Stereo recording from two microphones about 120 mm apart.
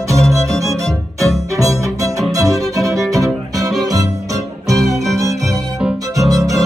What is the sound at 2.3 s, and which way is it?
Violin, 30° right (ahead or behind).